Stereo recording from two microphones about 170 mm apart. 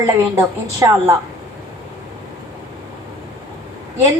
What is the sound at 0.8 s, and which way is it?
Speech, 15° right (ahead or behind).